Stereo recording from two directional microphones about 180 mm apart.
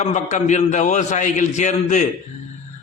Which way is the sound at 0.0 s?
40° left (ahead or behind).